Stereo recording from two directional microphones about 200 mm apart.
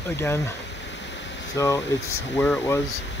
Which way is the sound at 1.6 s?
15° left (ahead or behind).